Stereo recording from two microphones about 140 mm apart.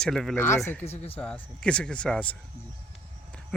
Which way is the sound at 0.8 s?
50° left (ahead or behind).